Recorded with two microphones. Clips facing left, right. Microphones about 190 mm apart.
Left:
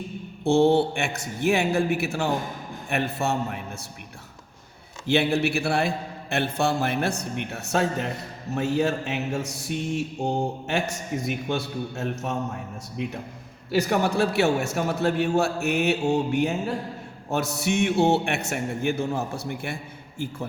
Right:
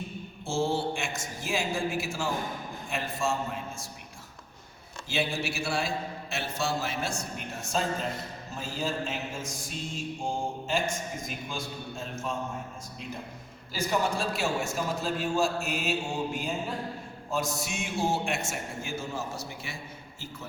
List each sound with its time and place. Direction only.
0.4 s a man's voice: 65° left (ahead or behind)
5.0 s a man's voice: 60° left (ahead or behind)
7.3 s mantra: 65° left (ahead or behind)
17.3 s a man's voice: 65° left (ahead or behind)